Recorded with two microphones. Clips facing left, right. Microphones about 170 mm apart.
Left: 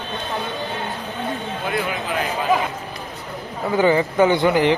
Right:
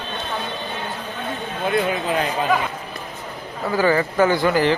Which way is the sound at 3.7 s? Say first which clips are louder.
Left 2 dB; 20° left (ahead or behind).